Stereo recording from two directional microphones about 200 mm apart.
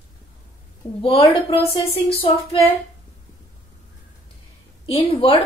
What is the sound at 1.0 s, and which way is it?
Speech, 25° left (ahead or behind).